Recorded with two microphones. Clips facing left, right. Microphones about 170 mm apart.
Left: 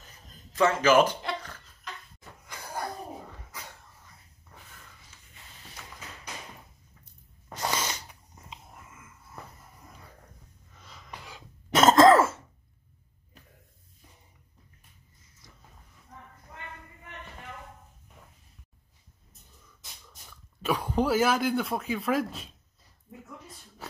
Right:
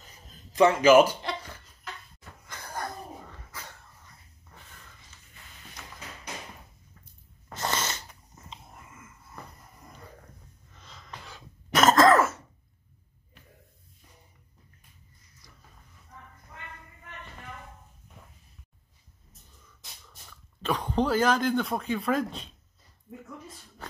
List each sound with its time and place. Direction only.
0.5 s a man's voice: 15° right (ahead or behind)
2.4 s a sound: 10° left (ahead or behind)
7.4 s sneeze: 10° left (ahead or behind)
10.7 s snort: 5° left (ahead or behind)
11.7 s throat clearing: 25° left (ahead or behind)
20.1 s dog: 10° left (ahead or behind)